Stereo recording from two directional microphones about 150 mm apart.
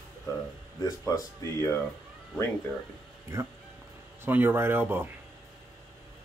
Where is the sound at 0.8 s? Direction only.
20° left (ahead or behind).